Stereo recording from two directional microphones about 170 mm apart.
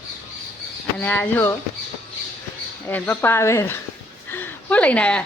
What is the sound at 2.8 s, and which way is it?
Speech, 10° left (ahead or behind).